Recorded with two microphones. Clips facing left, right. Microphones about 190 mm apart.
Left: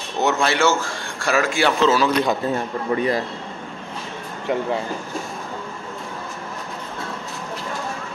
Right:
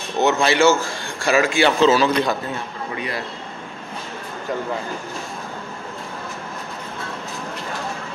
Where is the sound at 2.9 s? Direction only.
40° left (ahead or behind).